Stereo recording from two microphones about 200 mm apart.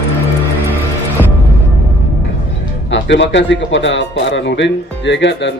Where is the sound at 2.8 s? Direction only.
60° left (ahead or behind).